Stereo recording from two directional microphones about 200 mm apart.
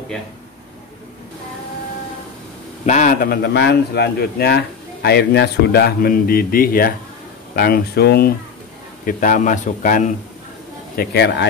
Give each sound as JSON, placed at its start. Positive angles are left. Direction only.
{"t": 2.8, "sound": "a man's voice", "side_deg": 40}
{"t": 9.0, "sound": "speech", "side_deg": 40}
{"t": 11.0, "sound": "speech", "side_deg": 55}